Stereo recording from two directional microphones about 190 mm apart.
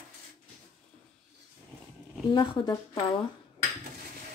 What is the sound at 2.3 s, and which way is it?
Speech, 25° left (ahead or behind).